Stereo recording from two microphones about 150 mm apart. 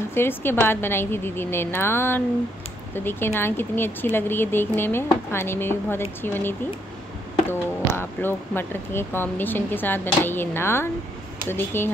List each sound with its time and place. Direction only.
0.1 s speech: 15° left (ahead or behind)
8.0 s speech: 15° left (ahead or behind)